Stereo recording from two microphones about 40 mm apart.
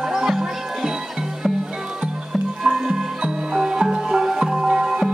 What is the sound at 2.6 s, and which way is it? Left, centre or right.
Music, centre.